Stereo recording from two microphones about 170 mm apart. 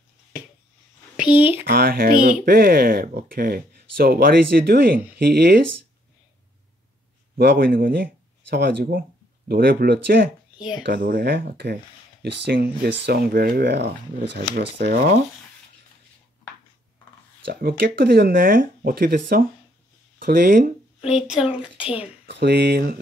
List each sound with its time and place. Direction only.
1.1 s speech: 10° right (ahead or behind)
1.6 s speech: 60° right (ahead or behind)
7.3 s speech: 65° right (ahead or behind)
14.5 s speech: 70° right (ahead or behind)
17.5 s speech: 65° right (ahead or behind)
21.0 s speech: 5° right (ahead or behind)
21.5 s a woman's voice: 30° left (ahead or behind)
22.2 s speech: 75° right (ahead or behind)